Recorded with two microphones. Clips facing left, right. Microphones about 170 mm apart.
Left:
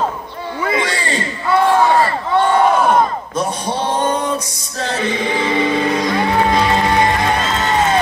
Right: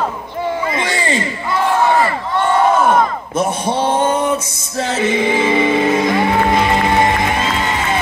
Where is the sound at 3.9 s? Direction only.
25° right (ahead or behind).